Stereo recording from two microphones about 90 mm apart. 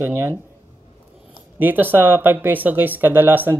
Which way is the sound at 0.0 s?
25° right (ahead or behind).